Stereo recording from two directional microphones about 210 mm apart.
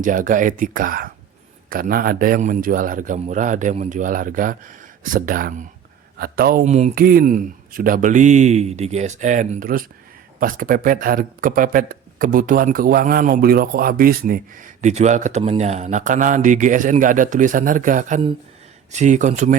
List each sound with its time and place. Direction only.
0.0 s speech: 40° right (ahead or behind)